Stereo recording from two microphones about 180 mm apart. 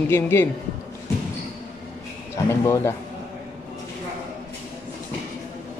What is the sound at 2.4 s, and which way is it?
Speech, 15° left (ahead or behind).